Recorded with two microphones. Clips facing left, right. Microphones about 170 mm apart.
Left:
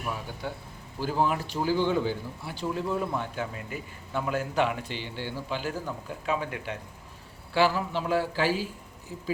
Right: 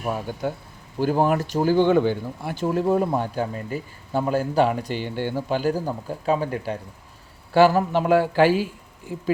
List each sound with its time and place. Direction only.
0.0 s speech: 45° right (ahead or behind); by 9.2 s 65° right (ahead or behind)